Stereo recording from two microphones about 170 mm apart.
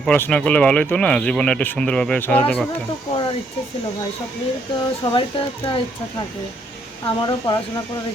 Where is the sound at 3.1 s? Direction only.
30° left (ahead or behind).